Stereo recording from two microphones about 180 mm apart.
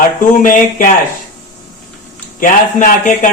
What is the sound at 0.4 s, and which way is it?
Speech, 50° left (ahead or behind).